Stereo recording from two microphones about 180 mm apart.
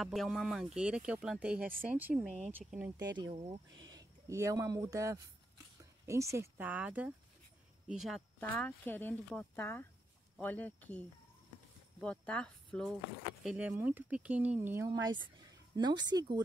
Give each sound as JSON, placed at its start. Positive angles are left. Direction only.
{"t": 0.0, "sound": "speech", "side_deg": 0}
{"t": 3.0, "sound": "speech", "side_deg": -25}
{"t": 8.4, "sound": "speech", "side_deg": 10}
{"t": 13.4, "sound": "speech", "side_deg": -5}